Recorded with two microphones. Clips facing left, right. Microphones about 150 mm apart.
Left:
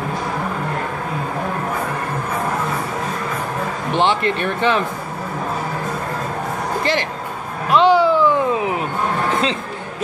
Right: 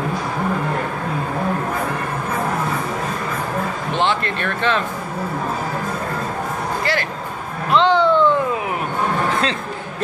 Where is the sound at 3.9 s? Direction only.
15° left (ahead or behind).